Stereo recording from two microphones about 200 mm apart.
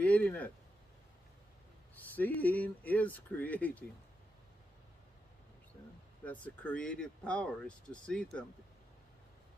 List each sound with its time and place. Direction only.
0.0 s a sound: 5° left (ahead or behind)
2.1 s speech: 10° left (ahead or behind)
6.4 s speech: 5° left (ahead or behind)